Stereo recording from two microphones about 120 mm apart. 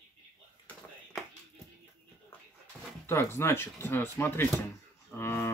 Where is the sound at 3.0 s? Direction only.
20° left (ahead or behind).